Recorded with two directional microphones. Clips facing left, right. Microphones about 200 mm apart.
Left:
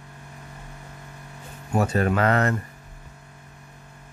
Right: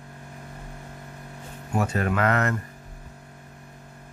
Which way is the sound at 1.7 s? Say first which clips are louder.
Left 3 dB; 35° left (ahead or behind).